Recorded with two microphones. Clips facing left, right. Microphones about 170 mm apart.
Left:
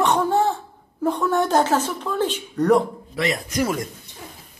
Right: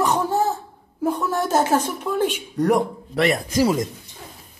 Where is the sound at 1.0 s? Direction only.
5° right (ahead or behind).